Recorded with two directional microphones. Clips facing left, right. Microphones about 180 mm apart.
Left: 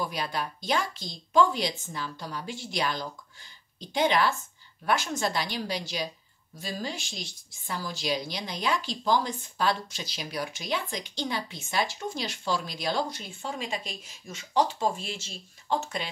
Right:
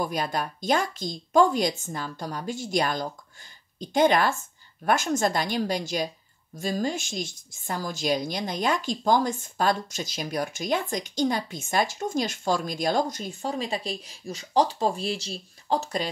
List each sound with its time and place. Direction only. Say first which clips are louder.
0.0 s a woman's voice: right 4 dB; 45° right (ahead or behind)